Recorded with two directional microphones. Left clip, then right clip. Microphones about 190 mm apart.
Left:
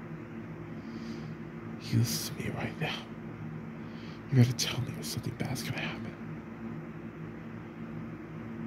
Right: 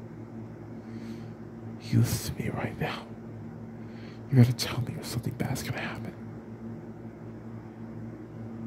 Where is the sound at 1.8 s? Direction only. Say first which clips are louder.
Right 2 dB; 30° right (ahead or behind).